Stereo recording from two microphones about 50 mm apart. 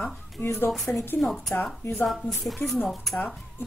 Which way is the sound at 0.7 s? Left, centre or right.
Centre.